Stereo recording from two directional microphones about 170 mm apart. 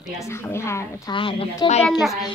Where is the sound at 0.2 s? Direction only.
15° left (ahead or behind).